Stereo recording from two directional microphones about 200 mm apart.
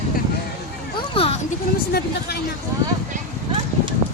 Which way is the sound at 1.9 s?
50° left (ahead or behind).